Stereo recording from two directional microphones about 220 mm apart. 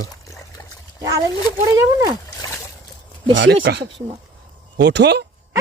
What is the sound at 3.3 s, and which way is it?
Speech, 60° right (ahead or behind).